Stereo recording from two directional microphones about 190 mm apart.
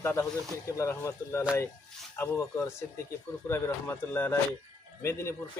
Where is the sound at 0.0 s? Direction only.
15° left (ahead or behind).